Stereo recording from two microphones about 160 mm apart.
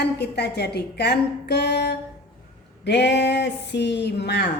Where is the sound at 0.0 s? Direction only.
90° left.